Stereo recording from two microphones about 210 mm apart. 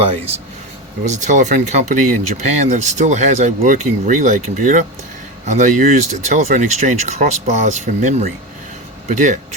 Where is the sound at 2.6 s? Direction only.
35° right (ahead or behind).